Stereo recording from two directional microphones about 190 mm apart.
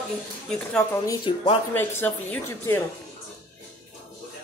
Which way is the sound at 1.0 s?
20° left (ahead or behind).